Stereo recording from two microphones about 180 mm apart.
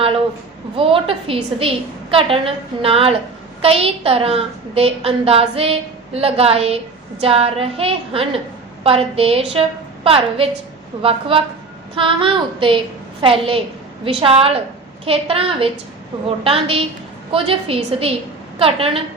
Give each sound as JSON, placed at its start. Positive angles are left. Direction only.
{"t": 0.8, "sound": "a woman's voice", "side_deg": -30}
{"t": 11.9, "sound": "child singing", "side_deg": -30}
{"t": 14.2, "sound": "a woman's voice", "side_deg": -35}